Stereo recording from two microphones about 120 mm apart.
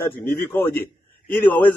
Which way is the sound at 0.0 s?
20° left (ahead or behind).